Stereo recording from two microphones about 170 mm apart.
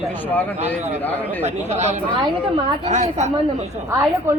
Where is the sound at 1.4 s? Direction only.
40° right (ahead or behind).